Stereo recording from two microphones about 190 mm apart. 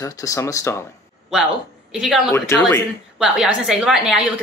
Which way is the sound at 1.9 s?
Centre (ahead or behind).